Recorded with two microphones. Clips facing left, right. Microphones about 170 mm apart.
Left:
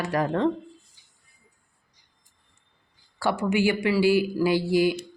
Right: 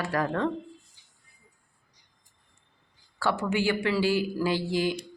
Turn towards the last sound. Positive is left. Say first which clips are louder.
# left 5 dB
turn(degrees=10)  # may be behind; listen again after turning